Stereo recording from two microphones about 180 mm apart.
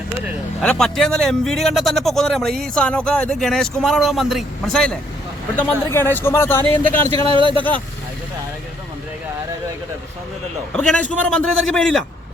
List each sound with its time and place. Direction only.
0.6 s speech: 5° left (ahead or behind)
7.1 s speech: 30° right (ahead or behind)
10.7 s speech: 5° left (ahead or behind)